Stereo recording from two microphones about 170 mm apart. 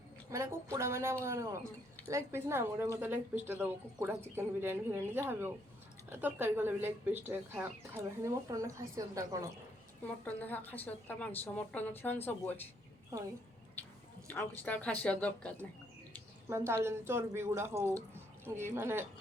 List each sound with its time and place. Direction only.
0.3 s speech: 15° right (ahead or behind)
10.2 s a woman's voice: 10° left (ahead or behind)
13.1 s a woman's voice: 20° right (ahead or behind)
14.3 s a woman's voice: 10° left (ahead or behind)
16.5 s speech: 15° right (ahead or behind)